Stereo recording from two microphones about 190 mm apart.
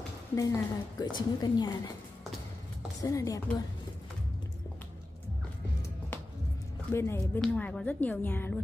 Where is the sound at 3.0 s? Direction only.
20° left (ahead or behind).